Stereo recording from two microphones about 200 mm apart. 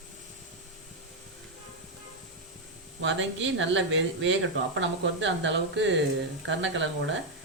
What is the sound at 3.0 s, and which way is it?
Speech, 70° right (ahead or behind).